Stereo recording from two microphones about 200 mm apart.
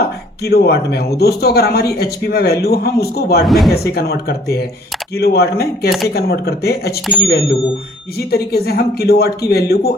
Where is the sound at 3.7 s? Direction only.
50° left (ahead or behind).